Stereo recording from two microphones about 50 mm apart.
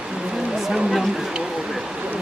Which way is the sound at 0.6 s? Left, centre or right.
Centre.